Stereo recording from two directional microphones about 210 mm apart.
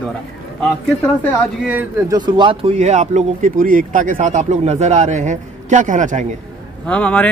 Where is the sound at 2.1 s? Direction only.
20° right (ahead or behind); by 6.3 s 35° right (ahead or behind).